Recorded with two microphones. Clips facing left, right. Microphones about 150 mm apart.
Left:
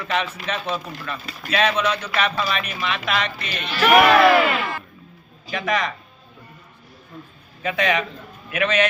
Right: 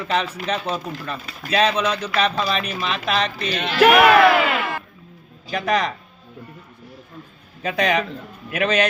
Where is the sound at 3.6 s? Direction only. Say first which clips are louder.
Right 6 dB; 65° right (ahead or behind).